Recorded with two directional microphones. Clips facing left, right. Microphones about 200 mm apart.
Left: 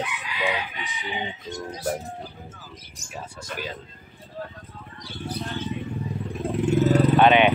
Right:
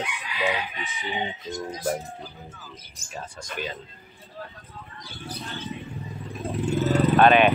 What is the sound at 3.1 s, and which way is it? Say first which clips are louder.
Chicken: left 1 dB; 5° left (ahead or behind).